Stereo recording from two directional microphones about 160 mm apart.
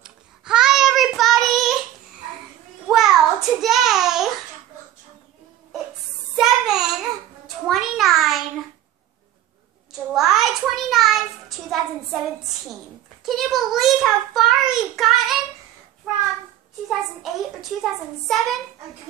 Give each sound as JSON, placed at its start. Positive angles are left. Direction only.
{"t": 0.0, "sound": "child singing", "side_deg": -5}
{"t": 2.9, "sound": "child singing", "side_deg": 0}
{"t": 6.3, "sound": "child singing", "side_deg": -5}
{"t": 7.4, "sound": "a sound", "side_deg": 0}
{"t": 9.9, "sound": "child singing", "side_deg": 0}
{"t": 16.1, "sound": "a sound", "side_deg": 0}